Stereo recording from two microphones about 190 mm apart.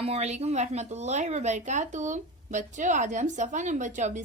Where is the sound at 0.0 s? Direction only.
35° right (ahead or behind).